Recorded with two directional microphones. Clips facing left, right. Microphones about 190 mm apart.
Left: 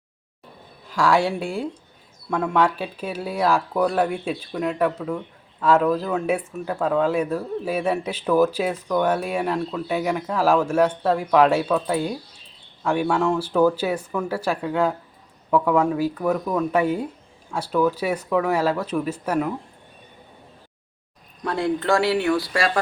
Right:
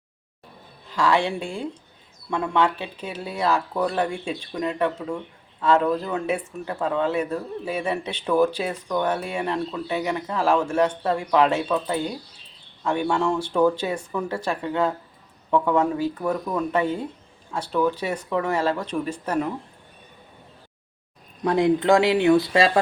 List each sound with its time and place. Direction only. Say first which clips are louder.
0.9 s speech: left 2 dB; 10° left (ahead or behind)
5.6 s speech: left 2 dB; 10° left (ahead or behind)
21.4 s speech: right 4 dB; 15° right (ahead or behind)